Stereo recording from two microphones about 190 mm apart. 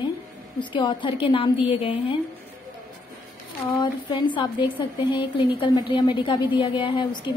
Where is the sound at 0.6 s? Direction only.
25° left (ahead or behind).